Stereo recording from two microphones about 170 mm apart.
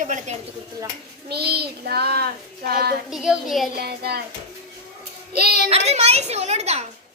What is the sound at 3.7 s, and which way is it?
Speech, 70° right (ahead or behind).